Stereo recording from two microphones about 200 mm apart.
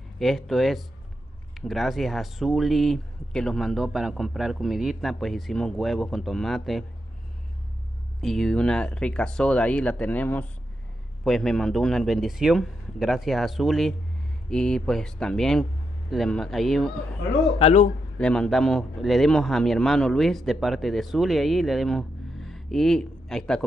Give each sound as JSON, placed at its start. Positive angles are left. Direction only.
{"t": 0.2, "sound": "a man's voice", "side_deg": 0}
{"t": 8.2, "sound": "a man's voice", "side_deg": 0}
{"t": 17.6, "sound": "a man's voice", "side_deg": 30}
{"t": 18.1, "sound": "a man's voice", "side_deg": 5}